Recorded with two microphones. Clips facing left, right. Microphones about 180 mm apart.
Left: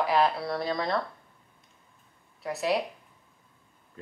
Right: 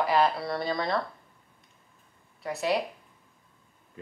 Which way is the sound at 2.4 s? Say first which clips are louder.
Even; centre (ahead or behind).